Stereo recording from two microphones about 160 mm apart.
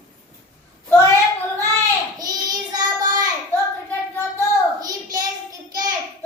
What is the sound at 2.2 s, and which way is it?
Child singing, 25° right (ahead or behind).